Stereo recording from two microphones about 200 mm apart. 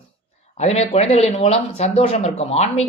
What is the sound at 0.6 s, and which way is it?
Speech, 30° left (ahead or behind).